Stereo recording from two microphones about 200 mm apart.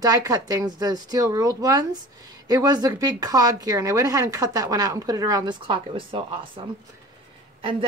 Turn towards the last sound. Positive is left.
turn(degrees=-25)  # may be behind; listen again after turning